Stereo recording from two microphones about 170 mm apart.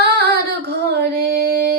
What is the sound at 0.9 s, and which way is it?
Music, 75° right (ahead or behind).